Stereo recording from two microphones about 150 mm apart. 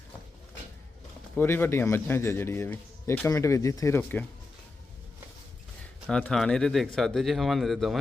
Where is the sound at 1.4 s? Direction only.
15° left (ahead or behind).